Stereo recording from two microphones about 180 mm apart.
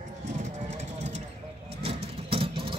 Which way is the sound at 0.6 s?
40° right (ahead or behind).